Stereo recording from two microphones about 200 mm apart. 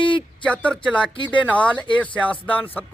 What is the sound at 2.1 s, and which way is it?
Speech, 5° left (ahead or behind).